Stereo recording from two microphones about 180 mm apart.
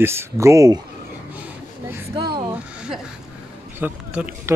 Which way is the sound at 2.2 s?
25° right (ahead or behind).